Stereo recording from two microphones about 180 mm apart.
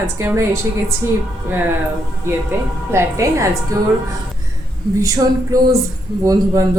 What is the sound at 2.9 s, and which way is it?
Speech, 15° right (ahead or behind).